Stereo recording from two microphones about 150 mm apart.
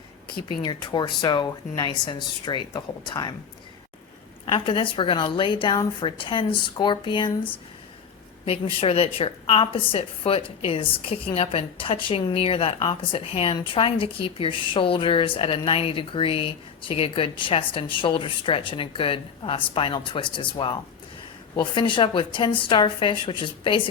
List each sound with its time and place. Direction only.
0.4 s a woman's voice: 30° left (ahead or behind)
4.5 s a woman's voice: 35° left (ahead or behind)
8.4 s a woman's voice: 40° left (ahead or behind)